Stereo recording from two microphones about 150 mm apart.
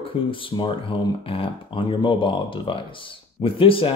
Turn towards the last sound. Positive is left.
turn(degrees=35)  # may be behind; listen again after turning